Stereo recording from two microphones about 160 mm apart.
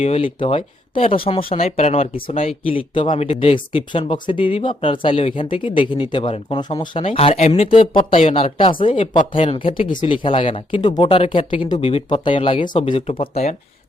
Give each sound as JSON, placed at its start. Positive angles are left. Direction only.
{"t": 0.0, "sound": "speech", "side_deg": 35}